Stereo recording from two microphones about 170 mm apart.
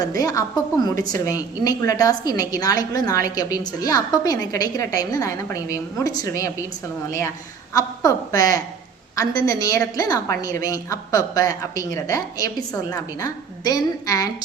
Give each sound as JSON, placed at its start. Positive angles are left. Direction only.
{"t": 0.2, "sound": "a woman's voice", "side_deg": 20}